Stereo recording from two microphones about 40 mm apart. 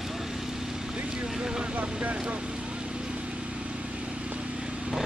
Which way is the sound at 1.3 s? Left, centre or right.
Centre.